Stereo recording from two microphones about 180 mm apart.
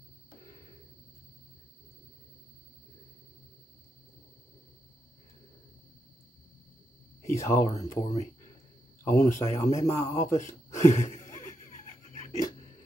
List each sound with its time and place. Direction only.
7.3 s a man's voice: 15° left (ahead or behind)
7.7 s speech: 35° left (ahead or behind)
9.0 s a man's voice: 15° left (ahead or behind)
10.4 s speech: 40° left (ahead or behind)